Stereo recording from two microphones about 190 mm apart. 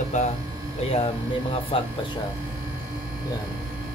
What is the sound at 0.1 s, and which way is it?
Speech, 40° left (ahead or behind).